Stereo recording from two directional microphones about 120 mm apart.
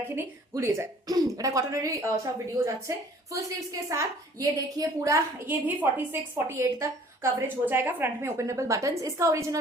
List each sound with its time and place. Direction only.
0.5 s a woman's voice: 25° right (ahead or behind)
5.5 s a woman's voice: 15° right (ahead or behind)